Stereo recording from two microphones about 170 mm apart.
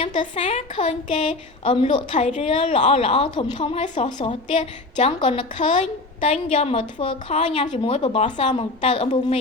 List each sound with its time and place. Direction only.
0.0 s a woman's voice: 30° left (ahead or behind)